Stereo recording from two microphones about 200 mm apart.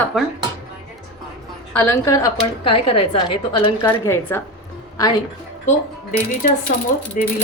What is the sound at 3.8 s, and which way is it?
Speech, 10° left (ahead or behind).